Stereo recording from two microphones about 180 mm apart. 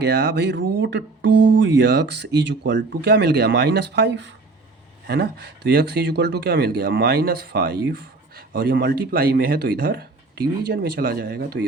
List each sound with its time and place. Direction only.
0.0 s speech: 70° right (ahead or behind)